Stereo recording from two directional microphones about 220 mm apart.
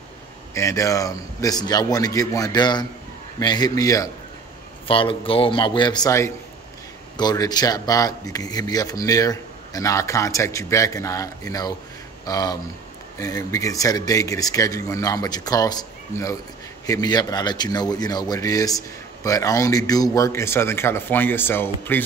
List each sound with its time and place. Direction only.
0.6 s a man's voice: 15° left (ahead or behind)